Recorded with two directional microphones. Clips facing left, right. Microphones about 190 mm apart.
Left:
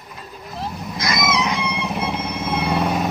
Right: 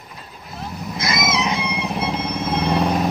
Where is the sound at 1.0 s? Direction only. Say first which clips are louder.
Left 1 dB; 25° right (ahead or behind).